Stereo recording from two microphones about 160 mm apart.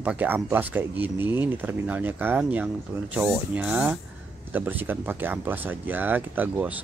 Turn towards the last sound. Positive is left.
turn(degrees=-10)  # may be behind; listen again after turning